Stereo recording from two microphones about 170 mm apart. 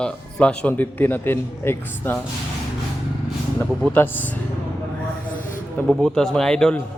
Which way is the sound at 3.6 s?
10° left (ahead or behind).